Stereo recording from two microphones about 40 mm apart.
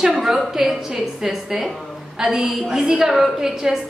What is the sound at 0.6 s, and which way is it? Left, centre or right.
A woman's voice, centre.